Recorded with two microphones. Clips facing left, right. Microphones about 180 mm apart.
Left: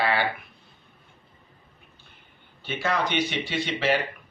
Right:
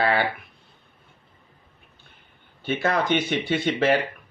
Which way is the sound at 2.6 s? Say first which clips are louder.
Right 4 dB; 50° right (ahead or behind).